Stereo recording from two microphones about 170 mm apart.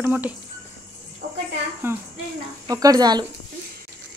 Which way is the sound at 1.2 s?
60° right (ahead or behind).